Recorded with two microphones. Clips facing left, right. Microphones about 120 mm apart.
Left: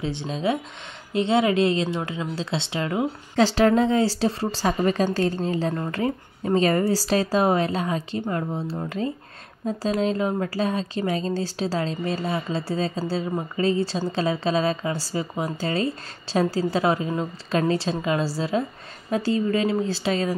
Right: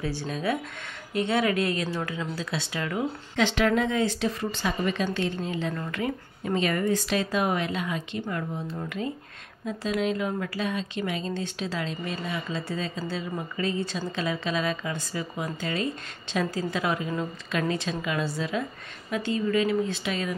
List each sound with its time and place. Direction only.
0.0 s speech: 20° left (ahead or behind)